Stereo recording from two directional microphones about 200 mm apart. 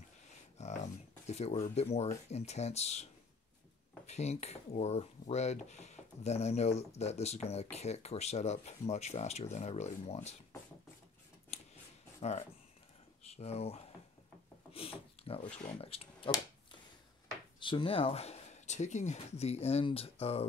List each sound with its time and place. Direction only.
0.6 s a sound: 35° left (ahead or behind)
1.2 s speech: 30° left (ahead or behind)
11.5 s scissors: 30° left (ahead or behind)
12.2 s speech: 35° left (ahead or behind)
17.6 s speech: 25° left (ahead or behind)